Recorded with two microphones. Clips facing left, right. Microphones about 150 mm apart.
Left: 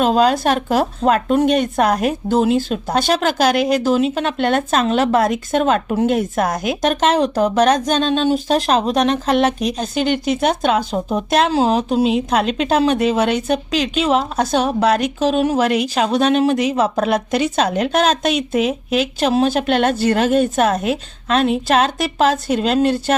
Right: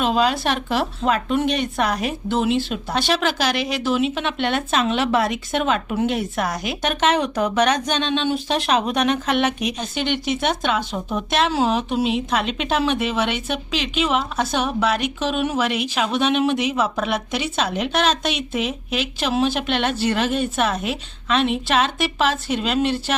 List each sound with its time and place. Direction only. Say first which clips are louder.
0.0 s a woman's voice: left 5 dB; 45° left (ahead or behind)
10.9 s a woman's voice: left 5 dB; 35° left (ahead or behind)
12.0 s a woman's voice: left 5 dB; centre (ahead or behind)
13.7 s a woman's voice: left 6 dB; 5° right (ahead or behind)
14.1 s a woman's voice: left 5 dB; 40° left (ahead or behind)
18.6 s a woman's voice: left 7 dB; centre (ahead or behind)
19.2 s a woman's voice: left 4 dB; 40° left (ahead or behind)